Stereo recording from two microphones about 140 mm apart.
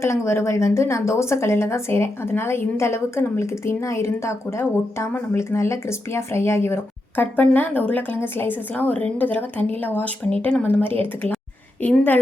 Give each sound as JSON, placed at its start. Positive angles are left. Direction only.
{"t": 0.0, "sound": "a woman's voice", "side_deg": 20}